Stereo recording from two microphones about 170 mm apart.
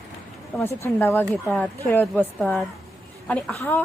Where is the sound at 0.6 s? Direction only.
15° left (ahead or behind).